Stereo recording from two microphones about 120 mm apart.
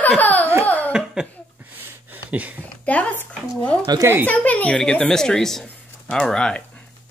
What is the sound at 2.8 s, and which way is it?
A woman's voice, 10° left (ahead or behind).